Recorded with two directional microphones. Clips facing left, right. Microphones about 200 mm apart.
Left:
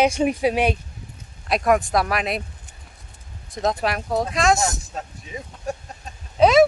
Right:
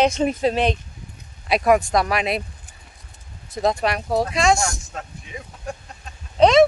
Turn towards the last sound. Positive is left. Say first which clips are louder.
# right 1 dB
turn(degrees=5)  # may be behind; listen again after turning